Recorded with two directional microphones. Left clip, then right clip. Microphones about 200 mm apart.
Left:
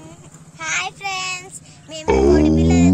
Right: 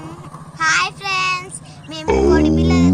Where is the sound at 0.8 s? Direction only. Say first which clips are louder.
Right 6 dB; 15° left (ahead or behind).